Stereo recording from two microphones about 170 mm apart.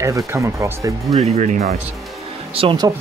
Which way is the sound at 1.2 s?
40° right (ahead or behind).